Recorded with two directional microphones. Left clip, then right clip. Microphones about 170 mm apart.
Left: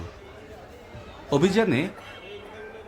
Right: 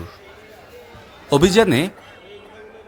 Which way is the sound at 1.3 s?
40° right (ahead or behind).